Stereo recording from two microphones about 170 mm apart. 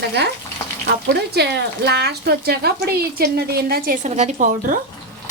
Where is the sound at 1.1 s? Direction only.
75° right (ahead or behind); by 4.8 s 50° right (ahead or behind).